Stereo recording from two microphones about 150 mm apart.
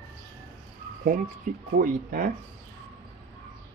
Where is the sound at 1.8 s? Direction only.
65° right (ahead or behind).